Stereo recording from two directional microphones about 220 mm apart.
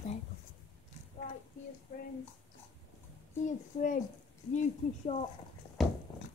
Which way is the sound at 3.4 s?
35° left (ahead or behind).